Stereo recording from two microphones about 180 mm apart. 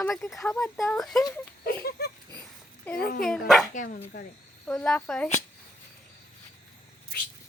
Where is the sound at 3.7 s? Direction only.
45° left (ahead or behind).